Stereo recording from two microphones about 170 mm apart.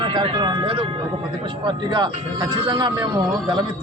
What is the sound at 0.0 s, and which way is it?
Speech, 25° right (ahead or behind).